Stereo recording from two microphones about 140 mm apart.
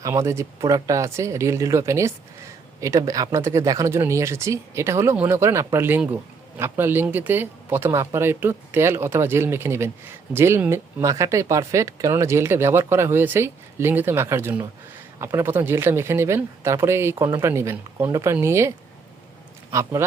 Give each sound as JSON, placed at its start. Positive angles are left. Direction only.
{"t": 0.0, "sound": "speech", "side_deg": -20}
{"t": 19.7, "sound": "speech", "side_deg": -20}